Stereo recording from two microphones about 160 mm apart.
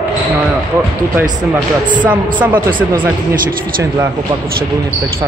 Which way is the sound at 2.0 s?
10° right (ahead or behind).